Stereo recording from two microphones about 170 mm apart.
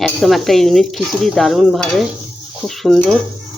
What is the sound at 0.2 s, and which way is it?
Speech, centre (ahead or behind).